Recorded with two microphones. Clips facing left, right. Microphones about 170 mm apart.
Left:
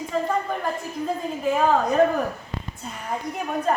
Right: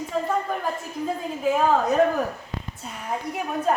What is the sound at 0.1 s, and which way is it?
A woman's voice, centre (ahead or behind).